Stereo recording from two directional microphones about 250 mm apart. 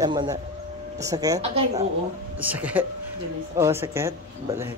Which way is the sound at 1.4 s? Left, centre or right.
Right.